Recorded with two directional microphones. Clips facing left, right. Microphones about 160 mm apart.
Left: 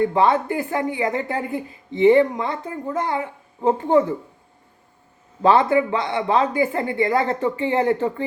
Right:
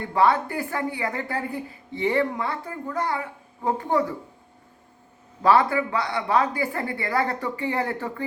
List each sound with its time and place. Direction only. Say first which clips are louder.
0.1 s a woman's voice: left 3 dB; 20° left (ahead or behind)
5.4 s a woman's voice: left 3 dB; 25° left (ahead or behind)